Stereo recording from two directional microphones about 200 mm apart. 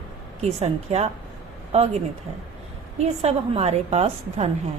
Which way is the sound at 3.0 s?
30° right (ahead or behind).